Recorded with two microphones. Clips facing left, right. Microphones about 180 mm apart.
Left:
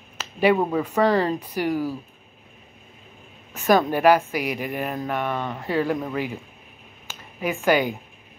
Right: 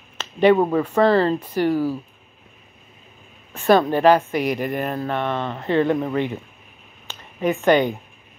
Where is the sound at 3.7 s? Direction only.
10° left (ahead or behind).